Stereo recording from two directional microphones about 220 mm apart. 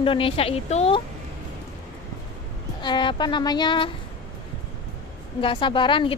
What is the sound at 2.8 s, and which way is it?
A woman's voice, 20° left (ahead or behind).